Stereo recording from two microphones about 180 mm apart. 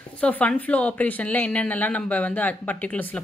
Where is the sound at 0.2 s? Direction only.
5° left (ahead or behind).